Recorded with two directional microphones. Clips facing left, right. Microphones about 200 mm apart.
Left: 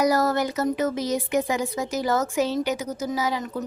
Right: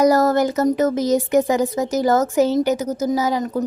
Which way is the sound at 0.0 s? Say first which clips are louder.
Right 6 dB; 45° right (ahead or behind).